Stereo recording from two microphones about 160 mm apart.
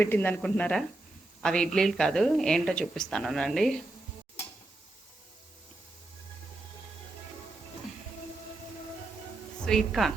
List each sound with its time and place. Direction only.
0.0 s a woman's voice: 10° left (ahead or behind)
9.6 s a woman's voice: centre (ahead or behind)